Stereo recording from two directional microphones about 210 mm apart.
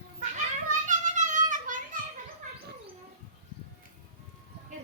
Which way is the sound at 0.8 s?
35° right (ahead or behind).